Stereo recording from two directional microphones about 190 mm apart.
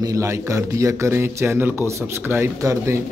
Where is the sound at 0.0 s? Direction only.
15° right (ahead or behind).